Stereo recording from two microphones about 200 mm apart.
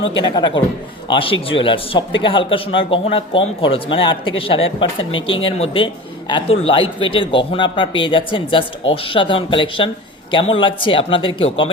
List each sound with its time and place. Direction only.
0.0 s a man's voice: 25° left (ahead or behind)